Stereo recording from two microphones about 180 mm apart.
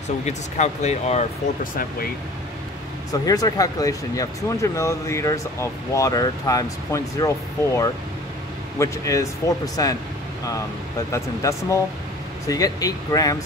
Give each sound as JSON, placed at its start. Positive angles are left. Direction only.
{"t": 0.2, "sound": "speech", "side_deg": 40}
{"t": 3.1, "sound": "speech", "side_deg": 20}
{"t": 11.1, "sound": "speech", "side_deg": 15}